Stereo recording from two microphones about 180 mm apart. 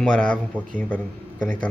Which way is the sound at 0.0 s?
5° left (ahead or behind).